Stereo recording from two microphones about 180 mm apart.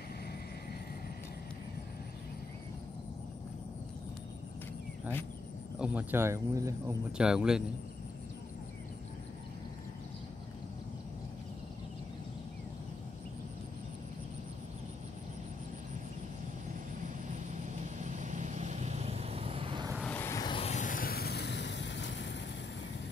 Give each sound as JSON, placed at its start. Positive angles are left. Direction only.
{"t": 5.8, "sound": "speech", "side_deg": -10}
{"t": 7.1, "sound": "speech", "side_deg": -5}
{"t": 18.0, "sound": "vehicle", "side_deg": -40}
{"t": 20.0, "sound": "vehicle", "side_deg": 10}
{"t": 20.4, "sound": "vehicle", "side_deg": 35}